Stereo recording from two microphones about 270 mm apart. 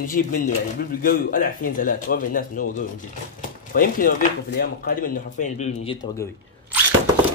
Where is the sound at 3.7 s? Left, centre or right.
Left.